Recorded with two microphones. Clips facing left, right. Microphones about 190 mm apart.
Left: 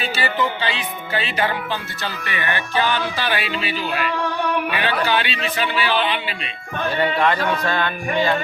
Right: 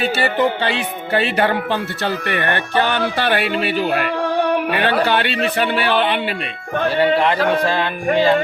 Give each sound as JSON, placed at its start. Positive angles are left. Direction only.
{"t": 0.0, "sound": "music", "side_deg": -60}
{"t": 6.9, "sound": "music", "side_deg": -30}